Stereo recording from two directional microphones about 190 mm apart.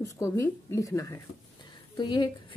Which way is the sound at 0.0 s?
15° left (ahead or behind).